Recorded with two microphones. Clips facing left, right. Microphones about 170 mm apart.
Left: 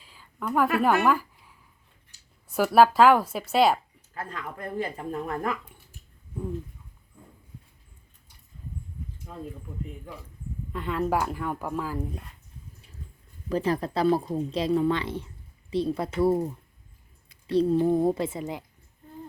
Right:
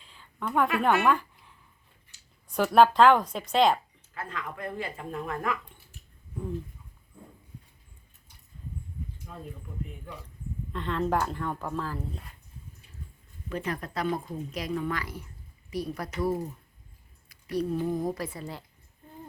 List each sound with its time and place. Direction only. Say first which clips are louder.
0.0 s a sound: left 1 dB; 5° left (ahead or behind)
2.5 s speech: left 1 dB; 5° left (ahead or behind)
4.1 s a woman's voice: left 1 dB; 40° left (ahead or behind)
10.7 s speech: left 1 dB; 5° left (ahead or behind)
13.5 s a woman's voice: left 7 dB; 30° left (ahead or behind)